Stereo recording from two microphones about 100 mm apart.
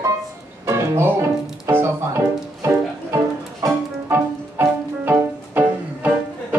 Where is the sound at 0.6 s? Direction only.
25° right (ahead or behind).